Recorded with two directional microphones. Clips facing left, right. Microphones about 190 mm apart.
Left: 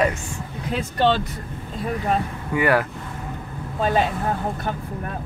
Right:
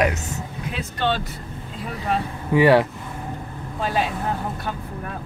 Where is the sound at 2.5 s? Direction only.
25° right (ahead or behind).